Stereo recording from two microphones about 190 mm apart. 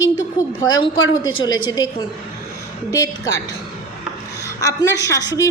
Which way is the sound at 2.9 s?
15° left (ahead or behind).